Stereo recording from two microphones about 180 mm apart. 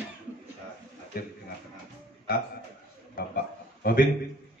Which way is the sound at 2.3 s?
55° left (ahead or behind).